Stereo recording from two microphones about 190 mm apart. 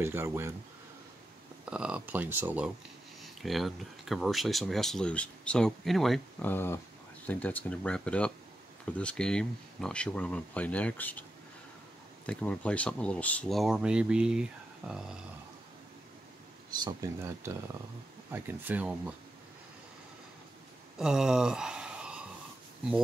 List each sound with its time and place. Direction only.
0.0 s speech: 10° right (ahead or behind)
1.7 s speech: 5° right (ahead or behind)
12.3 s speech: 5° left (ahead or behind)
16.7 s speech: 20° right (ahead or behind)
18.3 s speech: 10° right (ahead or behind)
21.0 s speech: 5° right (ahead or behind)